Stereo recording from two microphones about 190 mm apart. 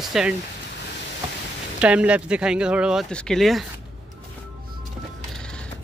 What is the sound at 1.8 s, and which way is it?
Speech, 5° right (ahead or behind).